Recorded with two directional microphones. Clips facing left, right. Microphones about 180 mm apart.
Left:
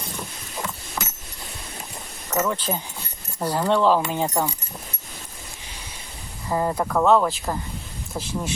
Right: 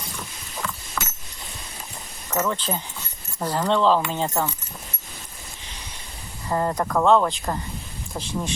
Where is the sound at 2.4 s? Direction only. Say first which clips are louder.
Left 1 dB; 10° left (ahead or behind).